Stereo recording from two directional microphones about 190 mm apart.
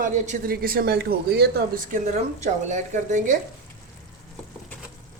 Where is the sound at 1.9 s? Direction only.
40° right (ahead or behind).